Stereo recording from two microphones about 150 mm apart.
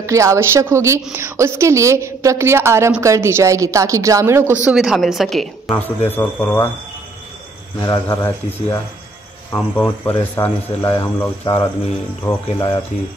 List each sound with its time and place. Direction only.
0.0 s a woman's voice: 20° right (ahead or behind); by 5.8 s centre (ahead or behind)
6.0 s speech: 15° left (ahead or behind)
7.8 s speech: 25° left (ahead or behind)